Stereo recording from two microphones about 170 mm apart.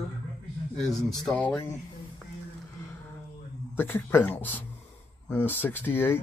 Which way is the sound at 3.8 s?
10° left (ahead or behind).